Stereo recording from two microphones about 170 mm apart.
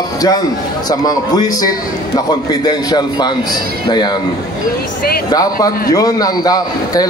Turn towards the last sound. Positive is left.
turn(degrees=20)  # may be behind; listen again after turning